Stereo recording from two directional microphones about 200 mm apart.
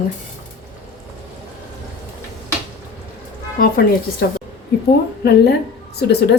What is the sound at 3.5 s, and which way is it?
Speech, 50° left (ahead or behind).